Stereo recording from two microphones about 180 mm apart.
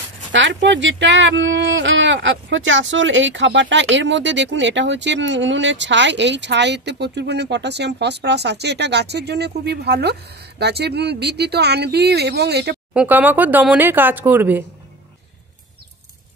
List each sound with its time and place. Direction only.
0.3 s speech: 85° right; by 12.7 s 65° right (ahead or behind)
12.9 s speech: 10° right (ahead or behind)